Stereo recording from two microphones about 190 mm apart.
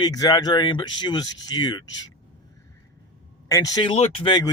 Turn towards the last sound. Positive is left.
turn(degrees=20)  # may be behind; listen again after turning